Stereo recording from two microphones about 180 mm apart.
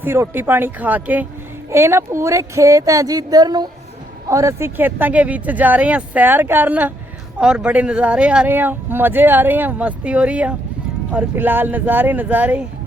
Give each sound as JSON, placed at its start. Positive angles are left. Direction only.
{"t": 0.0, "sound": "speech", "side_deg": -10}